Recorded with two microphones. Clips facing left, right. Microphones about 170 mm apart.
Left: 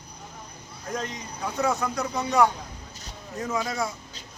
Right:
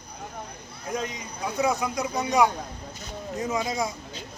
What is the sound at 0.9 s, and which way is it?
A man's voice, 10° right (ahead or behind).